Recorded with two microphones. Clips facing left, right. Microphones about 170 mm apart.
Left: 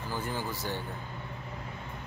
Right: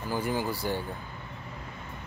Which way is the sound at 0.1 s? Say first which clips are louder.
Right 6 dB; 10° right (ahead or behind).